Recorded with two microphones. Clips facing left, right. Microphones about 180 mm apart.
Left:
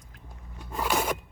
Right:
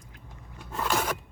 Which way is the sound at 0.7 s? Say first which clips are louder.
Left 1 dB; 10° left (ahead or behind).